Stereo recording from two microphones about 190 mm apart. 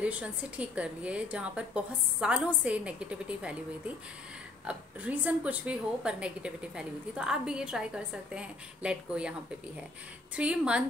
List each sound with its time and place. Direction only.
0.0 s a woman's voice: 5° right (ahead or behind)
4.6 s a woman's voice: 5° right (ahead or behind)
10.3 s a woman's voice: 5° right (ahead or behind)